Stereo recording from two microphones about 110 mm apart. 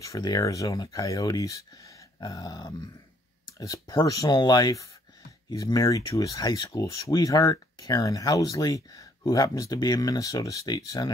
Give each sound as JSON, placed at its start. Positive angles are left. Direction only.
{"t": 0.0, "sound": "speech", "side_deg": 35}